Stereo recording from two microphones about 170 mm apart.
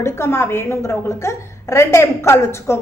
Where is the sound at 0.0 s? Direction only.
15° left (ahead or behind).